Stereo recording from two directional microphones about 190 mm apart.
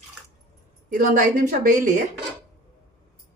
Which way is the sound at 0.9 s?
50° right (ahead or behind).